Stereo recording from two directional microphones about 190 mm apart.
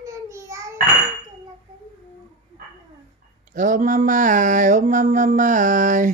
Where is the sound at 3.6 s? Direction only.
40° right (ahead or behind).